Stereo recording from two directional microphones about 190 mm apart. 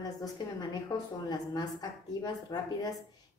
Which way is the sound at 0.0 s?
20° left (ahead or behind).